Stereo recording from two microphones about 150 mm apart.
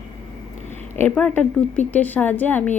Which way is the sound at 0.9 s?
10° left (ahead or behind).